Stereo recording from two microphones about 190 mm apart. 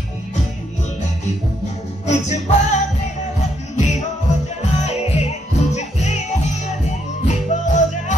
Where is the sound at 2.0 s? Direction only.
35° left (ahead or behind).